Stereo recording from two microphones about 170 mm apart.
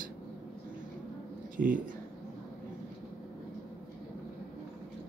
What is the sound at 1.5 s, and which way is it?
Speech, 55° right (ahead or behind).